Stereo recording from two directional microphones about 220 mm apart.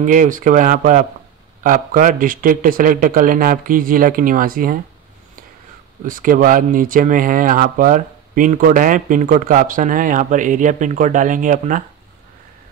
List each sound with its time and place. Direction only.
0.0 s speech: 35° right (ahead or behind)
6.0 s speech: 40° right (ahead or behind)